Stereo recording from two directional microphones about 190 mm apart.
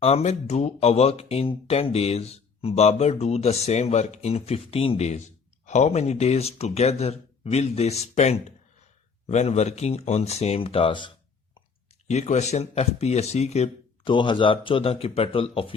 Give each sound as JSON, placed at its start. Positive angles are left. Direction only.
{"t": 0.0, "sound": "speech", "side_deg": 35}
{"t": 12.0, "sound": "speech", "side_deg": 35}